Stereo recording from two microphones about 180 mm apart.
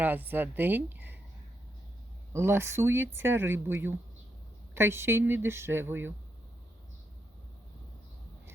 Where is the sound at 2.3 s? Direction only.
15° right (ahead or behind).